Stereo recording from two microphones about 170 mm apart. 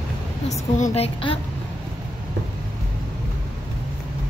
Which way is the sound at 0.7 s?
40° left (ahead or behind).